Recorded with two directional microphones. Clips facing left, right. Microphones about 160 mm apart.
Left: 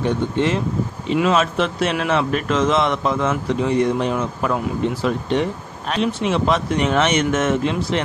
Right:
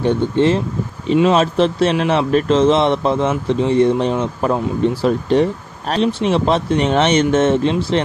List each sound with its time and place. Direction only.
0.0 s a man's voice: 30° right (ahead or behind)